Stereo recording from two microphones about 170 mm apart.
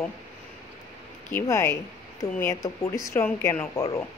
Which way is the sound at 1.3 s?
15° left (ahead or behind).